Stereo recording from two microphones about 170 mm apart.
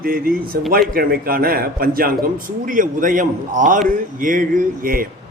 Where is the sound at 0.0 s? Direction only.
60° right (ahead or behind).